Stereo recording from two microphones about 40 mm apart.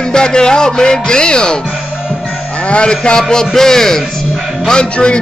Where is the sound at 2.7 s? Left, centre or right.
Left.